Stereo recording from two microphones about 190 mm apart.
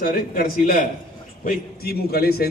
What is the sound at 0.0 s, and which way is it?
A man's voice, 50° left (ahead or behind).